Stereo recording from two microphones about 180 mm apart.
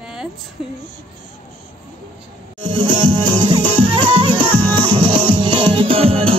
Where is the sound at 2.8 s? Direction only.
25° right (ahead or behind).